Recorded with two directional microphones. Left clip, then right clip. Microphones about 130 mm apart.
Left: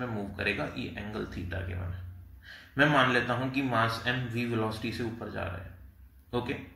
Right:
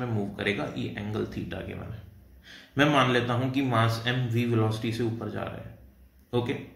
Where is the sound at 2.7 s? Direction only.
25° right (ahead or behind).